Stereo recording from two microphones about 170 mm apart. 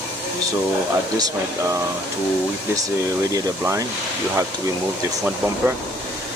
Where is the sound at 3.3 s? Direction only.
20° right (ahead or behind).